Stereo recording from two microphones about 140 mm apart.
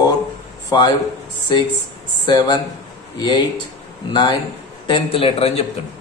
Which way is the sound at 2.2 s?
30° left (ahead or behind).